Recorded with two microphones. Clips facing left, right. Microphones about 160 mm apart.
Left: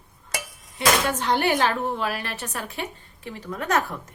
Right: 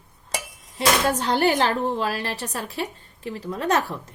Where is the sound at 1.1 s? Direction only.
35° right (ahead or behind).